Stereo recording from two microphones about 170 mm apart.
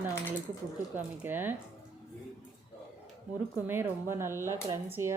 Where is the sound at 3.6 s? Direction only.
15° right (ahead or behind).